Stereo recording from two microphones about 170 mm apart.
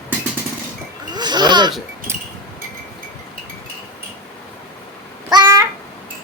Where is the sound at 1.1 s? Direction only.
25° right (ahead or behind).